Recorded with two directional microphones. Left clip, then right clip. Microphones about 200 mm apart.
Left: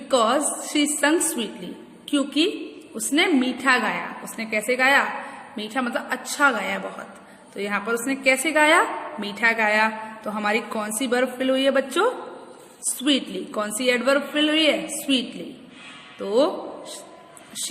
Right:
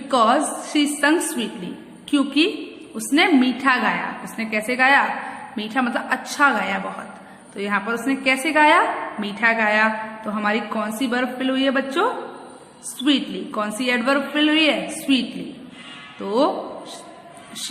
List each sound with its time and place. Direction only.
0.1 s a woman's voice: 20° left (ahead or behind)
16.2 s a woman's voice: 20° left (ahead or behind)